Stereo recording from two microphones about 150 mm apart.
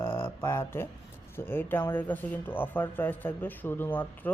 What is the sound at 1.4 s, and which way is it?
Speech, 15° left (ahead or behind).